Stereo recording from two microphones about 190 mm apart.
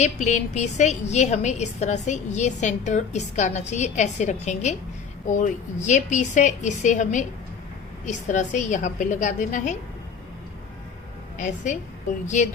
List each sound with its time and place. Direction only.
0.0 s a woman's voice: 40° left (ahead or behind)
11.3 s a woman's voice: 40° left (ahead or behind)